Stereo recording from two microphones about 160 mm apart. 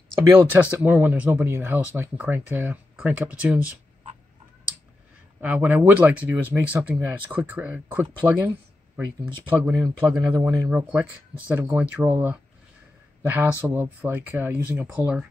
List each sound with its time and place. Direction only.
0.2 s speech: 15° right (ahead or behind)
5.4 s speech: 10° right (ahead or behind)